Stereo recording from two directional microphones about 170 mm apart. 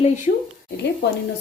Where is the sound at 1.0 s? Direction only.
85° left.